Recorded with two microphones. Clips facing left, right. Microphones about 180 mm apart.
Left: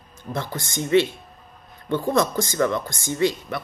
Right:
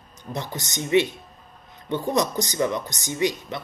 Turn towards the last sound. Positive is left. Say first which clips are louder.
# left 2 dB
turn(degrees=-15)  # may be behind; listen again after turning